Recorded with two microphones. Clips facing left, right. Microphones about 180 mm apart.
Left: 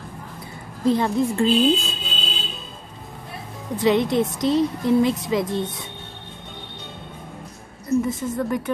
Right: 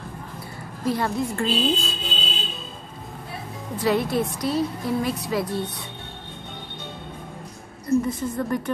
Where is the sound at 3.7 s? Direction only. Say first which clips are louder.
Left 3 dB; 20° left (ahead or behind).